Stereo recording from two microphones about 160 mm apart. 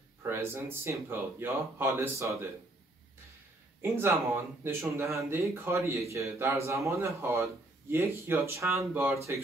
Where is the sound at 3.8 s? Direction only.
15° right (ahead or behind).